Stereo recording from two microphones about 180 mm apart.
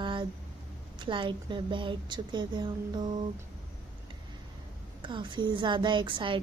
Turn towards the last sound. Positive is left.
turn(degrees=-25)  # may be behind; listen again after turning